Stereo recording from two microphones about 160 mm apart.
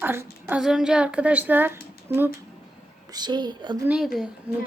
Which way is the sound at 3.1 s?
25° right (ahead or behind).